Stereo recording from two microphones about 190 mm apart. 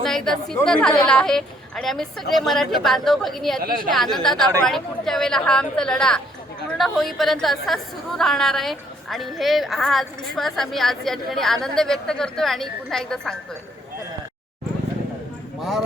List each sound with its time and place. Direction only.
0.0 s a woman's voice: centre (ahead or behind)
3.6 s a woman's voice: 50° right (ahead or behind)
3.9 s a woman's voice: centre (ahead or behind)